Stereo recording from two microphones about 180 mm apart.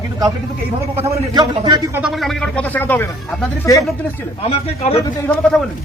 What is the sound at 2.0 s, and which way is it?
A man's voice, centre (ahead or behind).